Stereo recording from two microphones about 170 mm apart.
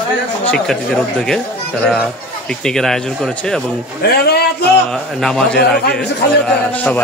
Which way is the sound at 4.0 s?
65° left (ahead or behind).